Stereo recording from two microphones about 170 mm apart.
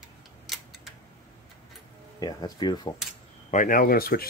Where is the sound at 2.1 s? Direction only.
25° left (ahead or behind).